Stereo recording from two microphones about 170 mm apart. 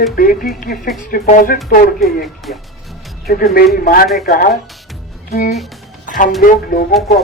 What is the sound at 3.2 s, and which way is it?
Speech, 60° left (ahead or behind).